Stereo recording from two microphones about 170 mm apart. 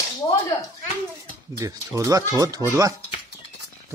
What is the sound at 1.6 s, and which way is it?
Speech, 20° right (ahead or behind).